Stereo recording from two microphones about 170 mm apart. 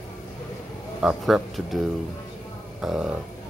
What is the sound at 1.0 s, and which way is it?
Speech, centre (ahead or behind).